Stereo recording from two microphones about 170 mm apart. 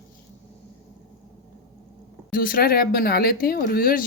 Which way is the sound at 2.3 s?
55° left (ahead or behind).